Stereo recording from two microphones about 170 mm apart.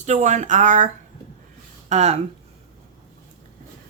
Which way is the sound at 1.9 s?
40° right (ahead or behind).